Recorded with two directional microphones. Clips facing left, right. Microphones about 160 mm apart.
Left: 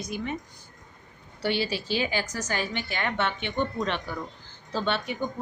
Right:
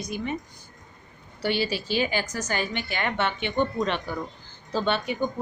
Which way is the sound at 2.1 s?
50° right (ahead or behind).